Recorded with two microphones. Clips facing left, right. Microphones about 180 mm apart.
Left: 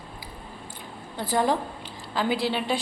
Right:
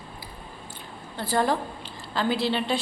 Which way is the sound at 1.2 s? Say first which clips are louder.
Even; 15° left (ahead or behind).